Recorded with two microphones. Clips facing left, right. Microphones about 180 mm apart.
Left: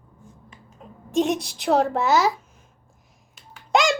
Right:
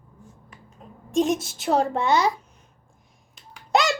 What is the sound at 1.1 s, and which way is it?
A child's voice, centre (ahead or behind).